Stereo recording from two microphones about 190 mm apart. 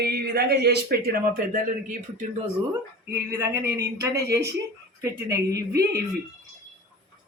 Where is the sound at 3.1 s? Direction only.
15° right (ahead or behind).